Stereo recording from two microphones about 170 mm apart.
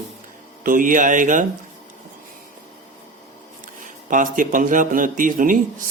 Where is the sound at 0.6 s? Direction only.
55° right (ahead or behind).